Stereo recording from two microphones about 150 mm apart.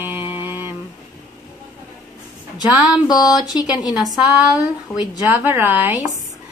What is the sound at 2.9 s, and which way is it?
Speech, 25° left (ahead or behind).